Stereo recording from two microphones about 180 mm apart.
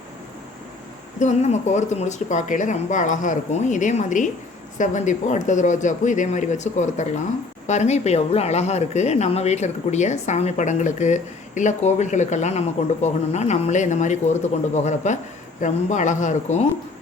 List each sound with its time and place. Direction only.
1.2 s speech: 40° left (ahead or behind)